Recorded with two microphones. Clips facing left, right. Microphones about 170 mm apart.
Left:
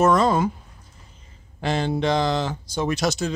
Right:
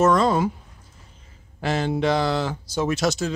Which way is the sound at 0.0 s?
5° left (ahead or behind).